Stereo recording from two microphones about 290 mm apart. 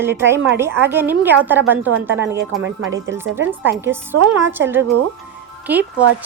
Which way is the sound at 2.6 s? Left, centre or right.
Right.